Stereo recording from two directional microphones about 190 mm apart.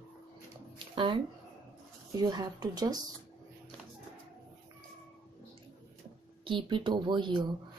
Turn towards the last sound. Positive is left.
turn(degrees=-25)  # may be behind; listen again after turning